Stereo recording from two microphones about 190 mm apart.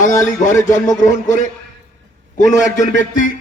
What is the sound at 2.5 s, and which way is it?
Speech, 40° left (ahead or behind).